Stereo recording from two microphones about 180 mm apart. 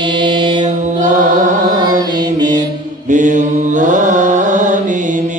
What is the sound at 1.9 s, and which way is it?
Mantra, 25° right (ahead or behind).